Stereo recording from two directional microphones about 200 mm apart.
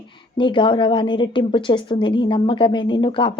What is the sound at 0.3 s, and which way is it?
A woman's voice, 25° left (ahead or behind).